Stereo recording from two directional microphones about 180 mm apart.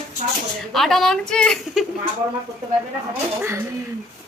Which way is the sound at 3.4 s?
15° right (ahead or behind).